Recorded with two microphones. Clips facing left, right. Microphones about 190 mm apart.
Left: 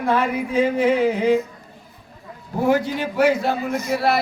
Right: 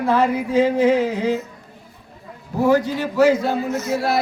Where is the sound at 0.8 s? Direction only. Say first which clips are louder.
Right 1 dB; 60° left (ahead or behind).